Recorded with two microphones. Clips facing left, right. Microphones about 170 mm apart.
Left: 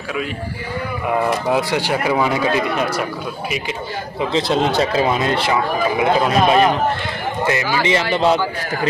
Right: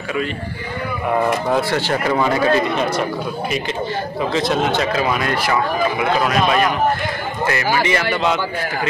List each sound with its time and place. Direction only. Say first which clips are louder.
1.5 s speech: even; 15° left (ahead or behind)
4.3 s speech: left 1 dB; 30° left (ahead or behind)
7.8 s speech: left 1 dB; 20° left (ahead or behind)